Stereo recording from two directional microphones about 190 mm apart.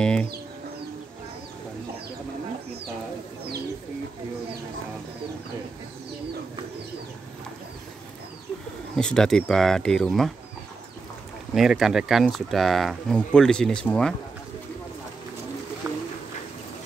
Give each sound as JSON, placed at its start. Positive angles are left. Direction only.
{"t": 0.0, "sound": "speech", "side_deg": 5}
{"t": 8.9, "sound": "speech", "side_deg": 5}
{"t": 11.5, "sound": "speech", "side_deg": 0}
{"t": 15.8, "sound": "a sound", "side_deg": -15}